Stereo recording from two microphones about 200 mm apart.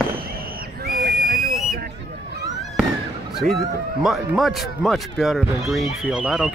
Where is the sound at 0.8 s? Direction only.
50° right (ahead or behind).